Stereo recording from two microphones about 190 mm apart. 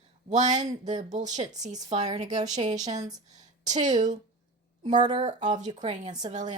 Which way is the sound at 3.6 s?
40° right (ahead or behind).